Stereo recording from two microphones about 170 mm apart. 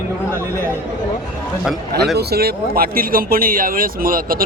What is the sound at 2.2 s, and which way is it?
Speech, 70° right (ahead or behind).